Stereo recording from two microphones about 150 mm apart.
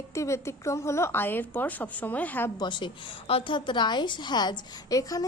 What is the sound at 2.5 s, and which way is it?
A woman's voice, 30° left (ahead or behind).